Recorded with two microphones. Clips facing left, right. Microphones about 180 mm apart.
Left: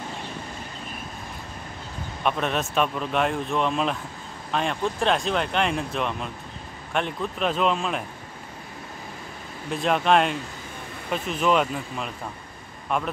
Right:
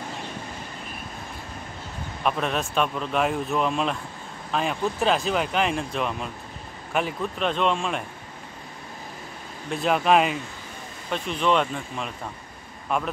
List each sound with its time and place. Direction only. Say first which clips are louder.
2.2 s speech: even; centre (ahead or behind)
9.7 s speech: even; centre (ahead or behind)